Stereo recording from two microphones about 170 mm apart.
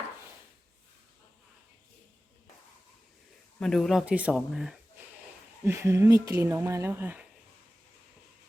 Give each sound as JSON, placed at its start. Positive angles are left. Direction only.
{"t": 3.6, "sound": "speech", "side_deg": 5}
{"t": 5.6, "sound": "speech", "side_deg": -15}